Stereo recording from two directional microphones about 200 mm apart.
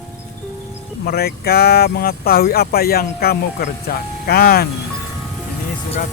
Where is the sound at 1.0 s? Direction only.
50° left (ahead or behind).